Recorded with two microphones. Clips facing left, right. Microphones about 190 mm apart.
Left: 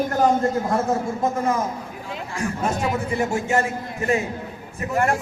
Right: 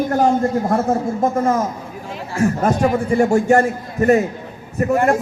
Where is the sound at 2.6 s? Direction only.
45° right (ahead or behind).